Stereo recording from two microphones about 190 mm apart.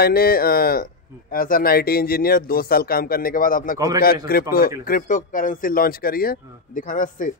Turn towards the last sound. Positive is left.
turn(degrees=45)  # may be behind; listen again after turning